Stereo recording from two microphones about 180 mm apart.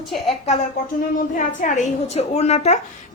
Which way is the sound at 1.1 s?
45° left (ahead or behind).